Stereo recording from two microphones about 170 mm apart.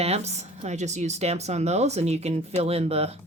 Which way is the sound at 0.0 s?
40° right (ahead or behind).